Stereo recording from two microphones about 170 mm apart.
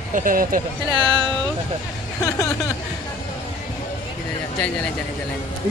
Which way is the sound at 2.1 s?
20° left (ahead or behind).